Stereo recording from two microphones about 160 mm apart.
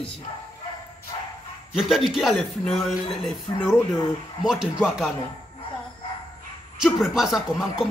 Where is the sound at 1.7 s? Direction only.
Centre (ahead or behind).